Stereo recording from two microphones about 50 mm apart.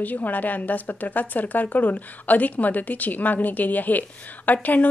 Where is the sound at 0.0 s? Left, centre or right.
Left.